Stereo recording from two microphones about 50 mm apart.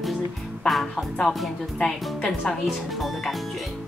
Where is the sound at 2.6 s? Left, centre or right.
Centre.